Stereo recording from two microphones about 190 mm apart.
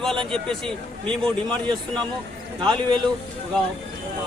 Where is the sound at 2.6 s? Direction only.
25° right (ahead or behind).